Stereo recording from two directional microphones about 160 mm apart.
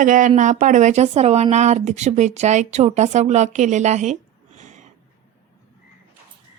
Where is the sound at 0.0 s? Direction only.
55° right (ahead or behind).